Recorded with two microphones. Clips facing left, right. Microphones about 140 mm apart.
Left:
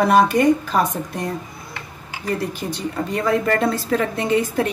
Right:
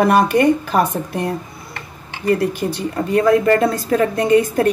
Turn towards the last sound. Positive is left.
turn(degrees=-50)  # may be behind; listen again after turning